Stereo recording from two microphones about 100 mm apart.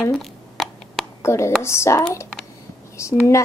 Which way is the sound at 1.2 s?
30° left (ahead or behind).